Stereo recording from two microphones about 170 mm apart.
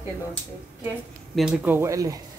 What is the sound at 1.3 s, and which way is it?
Speech, 5° right (ahead or behind).